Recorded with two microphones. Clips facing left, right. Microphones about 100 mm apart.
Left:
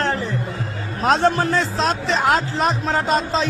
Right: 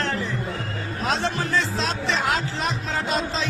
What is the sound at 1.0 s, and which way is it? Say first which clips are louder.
Speech: left 8 dB; 50° left (ahead or behind).